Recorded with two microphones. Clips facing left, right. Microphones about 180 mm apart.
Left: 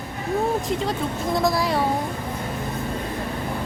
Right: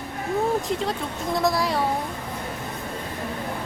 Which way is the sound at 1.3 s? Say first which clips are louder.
Left 1 dB; centre (ahead or behind).